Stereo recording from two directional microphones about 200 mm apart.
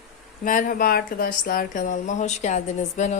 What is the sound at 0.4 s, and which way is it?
Speech, 45° left (ahead or behind).